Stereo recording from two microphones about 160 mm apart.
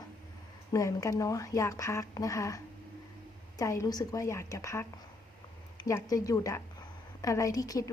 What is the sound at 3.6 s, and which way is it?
A woman's voice, 20° left (ahead or behind).